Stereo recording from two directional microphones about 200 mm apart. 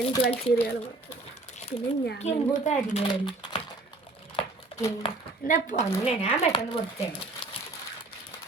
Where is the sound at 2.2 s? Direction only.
35° left (ahead or behind).